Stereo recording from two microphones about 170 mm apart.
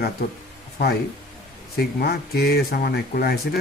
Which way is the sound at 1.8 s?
65° left (ahead or behind).